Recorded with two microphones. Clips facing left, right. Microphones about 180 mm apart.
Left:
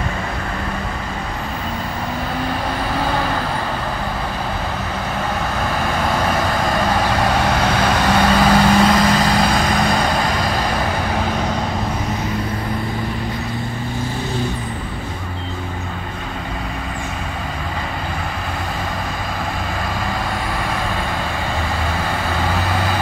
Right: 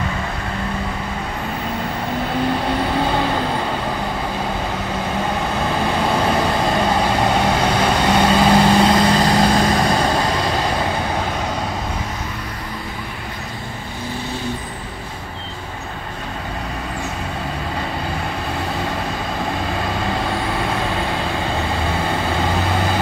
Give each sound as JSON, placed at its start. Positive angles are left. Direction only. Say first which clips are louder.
{"t": 6.8, "sound": "vehicle", "louder": "right 1 dB", "side_deg": -20}
{"t": 8.7, "sound": "vehicle", "louder": "even", "side_deg": -30}